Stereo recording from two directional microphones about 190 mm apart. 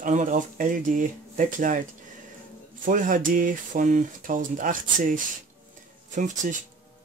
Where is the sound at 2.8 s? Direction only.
45° right (ahead or behind).